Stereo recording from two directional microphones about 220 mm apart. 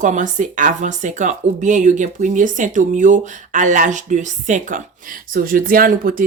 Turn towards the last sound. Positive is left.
turn(degrees=-40)  # may be behind; listen again after turning